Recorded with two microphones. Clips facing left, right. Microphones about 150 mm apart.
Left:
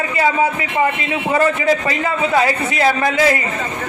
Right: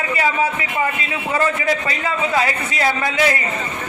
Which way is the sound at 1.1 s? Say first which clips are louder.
Left 4 dB; 25° left (ahead or behind).